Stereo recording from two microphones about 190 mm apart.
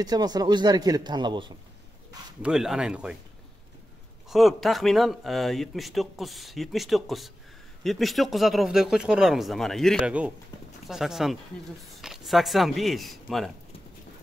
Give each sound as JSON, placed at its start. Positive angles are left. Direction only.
{"t": 0.0, "sound": "a man's voice", "side_deg": -20}
{"t": 2.4, "sound": "speech", "side_deg": -5}
{"t": 4.3, "sound": "speech", "side_deg": 0}